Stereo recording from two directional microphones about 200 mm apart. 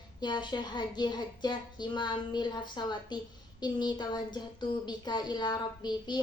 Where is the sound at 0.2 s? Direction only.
20° left (ahead or behind).